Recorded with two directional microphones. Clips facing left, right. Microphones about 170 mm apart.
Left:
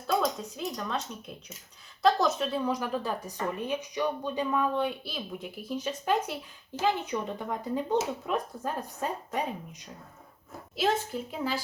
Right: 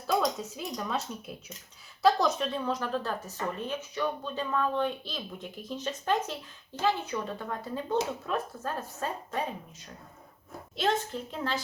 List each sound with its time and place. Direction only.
0.1 s a woman's voice: centre (ahead or behind); by 9.4 s 15° left (ahead or behind)
10.8 s a woman's voice: 5° left (ahead or behind)